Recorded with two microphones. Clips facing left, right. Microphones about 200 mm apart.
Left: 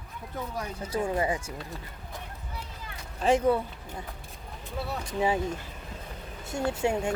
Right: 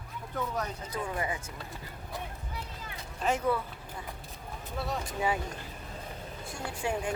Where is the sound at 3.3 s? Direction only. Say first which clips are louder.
Left 6 dB; 25° left (ahead or behind).